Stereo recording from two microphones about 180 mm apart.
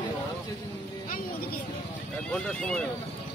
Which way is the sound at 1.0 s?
50° left (ahead or behind).